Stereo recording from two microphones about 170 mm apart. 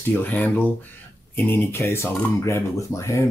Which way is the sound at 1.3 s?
15° left (ahead or behind).